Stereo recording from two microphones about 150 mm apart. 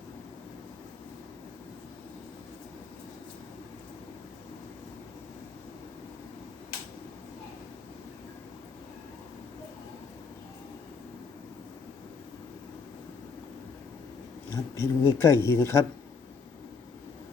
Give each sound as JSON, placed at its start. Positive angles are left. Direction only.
{"t": 14.5, "sound": "speech", "side_deg": 20}